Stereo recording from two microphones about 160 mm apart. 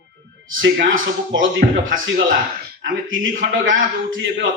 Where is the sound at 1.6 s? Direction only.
60° right (ahead or behind).